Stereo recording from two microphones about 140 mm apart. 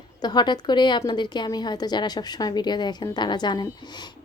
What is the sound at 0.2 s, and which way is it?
A woman's voice, 30° left (ahead or behind).